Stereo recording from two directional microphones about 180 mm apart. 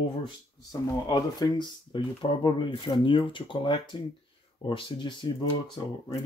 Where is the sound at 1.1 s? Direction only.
25° left (ahead or behind).